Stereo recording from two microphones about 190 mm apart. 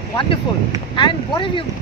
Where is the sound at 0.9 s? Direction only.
25° left (ahead or behind).